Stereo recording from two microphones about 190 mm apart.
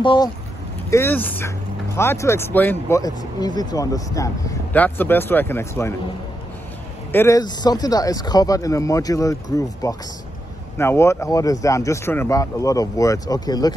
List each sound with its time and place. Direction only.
0.0 s speech: 25° left (ahead or behind)
0.8 s speech: 15° left (ahead or behind)
7.1 s speech: 15° left (ahead or behind)